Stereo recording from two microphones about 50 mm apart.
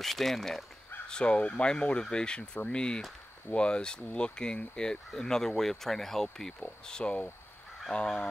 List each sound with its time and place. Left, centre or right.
0.0 s speech: centre
1.0 s speech: centre